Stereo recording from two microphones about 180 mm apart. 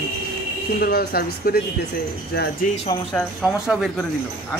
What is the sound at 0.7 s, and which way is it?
A man's voice, 55° left (ahead or behind).